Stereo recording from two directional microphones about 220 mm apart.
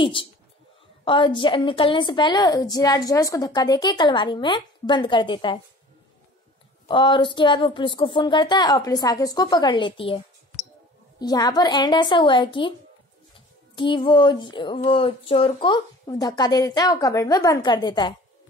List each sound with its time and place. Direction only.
0.0 s a woman's voice: 25° left (ahead or behind)
6.9 s a woman's voice: 20° left (ahead or behind)
13.7 s a woman's voice: 20° left (ahead or behind)